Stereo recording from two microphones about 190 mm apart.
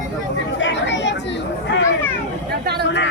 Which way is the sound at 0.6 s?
75° left (ahead or behind).